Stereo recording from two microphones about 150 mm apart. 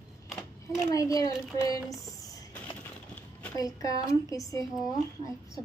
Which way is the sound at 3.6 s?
25° left (ahead or behind).